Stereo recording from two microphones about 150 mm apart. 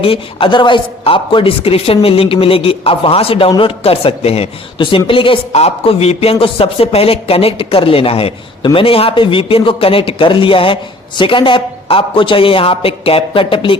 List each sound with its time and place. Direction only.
0.0 s a woman's voice: 40° left (ahead or behind)